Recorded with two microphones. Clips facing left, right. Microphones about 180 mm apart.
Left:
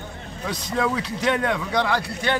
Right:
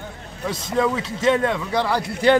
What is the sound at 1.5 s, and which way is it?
Speech, 5° right (ahead or behind).